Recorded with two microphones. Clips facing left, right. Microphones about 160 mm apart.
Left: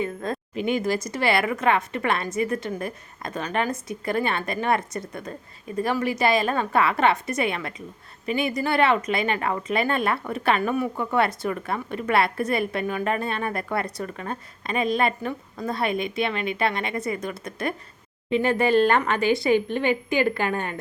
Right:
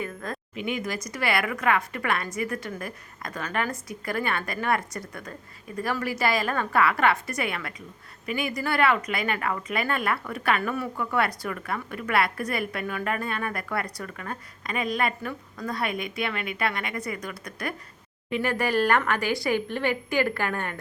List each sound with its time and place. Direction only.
0.0 s speech: 25° left (ahead or behind)